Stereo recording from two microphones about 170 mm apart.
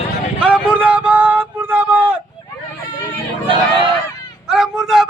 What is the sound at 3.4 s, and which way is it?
Honk, 30° right (ahead or behind).